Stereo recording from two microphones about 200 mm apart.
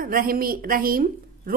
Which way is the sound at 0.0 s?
45° right (ahead or behind).